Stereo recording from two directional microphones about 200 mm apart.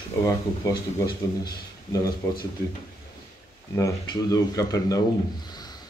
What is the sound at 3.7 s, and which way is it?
Speech, 15° left (ahead or behind).